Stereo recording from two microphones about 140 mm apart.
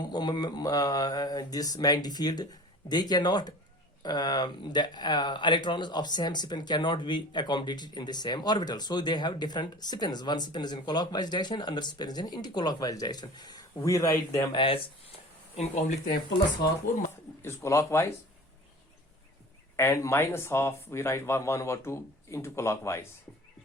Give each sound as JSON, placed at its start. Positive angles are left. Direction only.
{"t": 0.0, "sound": "speech", "side_deg": 30}
{"t": 14.5, "sound": "speech", "side_deg": 40}
{"t": 15.5, "sound": "speech", "side_deg": 50}
{"t": 17.4, "sound": "speech", "side_deg": 20}
{"t": 19.7, "sound": "speech", "side_deg": 20}